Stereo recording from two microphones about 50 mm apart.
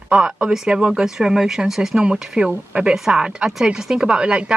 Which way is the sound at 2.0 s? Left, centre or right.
Centre.